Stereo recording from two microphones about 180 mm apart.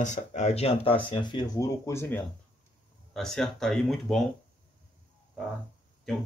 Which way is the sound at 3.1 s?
Centre (ahead or behind).